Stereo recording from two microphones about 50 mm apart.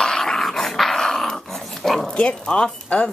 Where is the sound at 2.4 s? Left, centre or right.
Centre.